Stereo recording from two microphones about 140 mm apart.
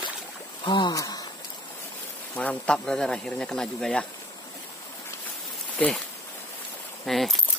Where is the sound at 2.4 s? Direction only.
10° left (ahead or behind).